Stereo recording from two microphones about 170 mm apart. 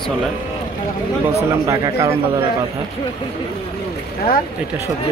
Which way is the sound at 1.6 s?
20° right (ahead or behind).